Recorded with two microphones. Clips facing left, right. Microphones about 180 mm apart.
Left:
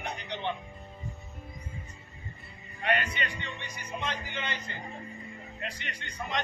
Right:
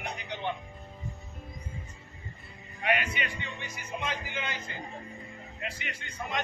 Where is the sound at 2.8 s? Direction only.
10° right (ahead or behind).